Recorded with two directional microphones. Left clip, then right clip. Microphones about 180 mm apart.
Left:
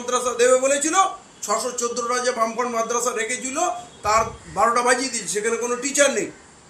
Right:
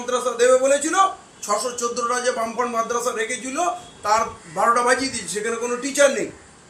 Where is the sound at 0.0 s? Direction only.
15° left (ahead or behind).